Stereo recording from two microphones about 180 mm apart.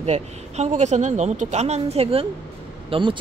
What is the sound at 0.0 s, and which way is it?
A woman's voice, 40° right (ahead or behind).